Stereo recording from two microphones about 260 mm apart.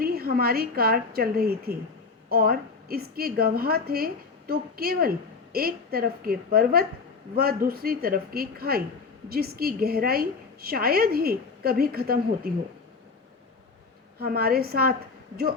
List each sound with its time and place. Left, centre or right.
0.0 s a woman's voice: right
14.2 s a woman's voice: right